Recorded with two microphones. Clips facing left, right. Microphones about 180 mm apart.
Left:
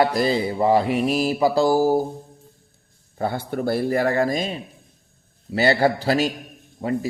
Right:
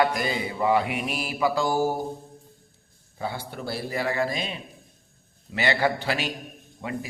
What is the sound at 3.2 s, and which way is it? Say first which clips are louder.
Speech: left 8 dB; 50° left (ahead or behind).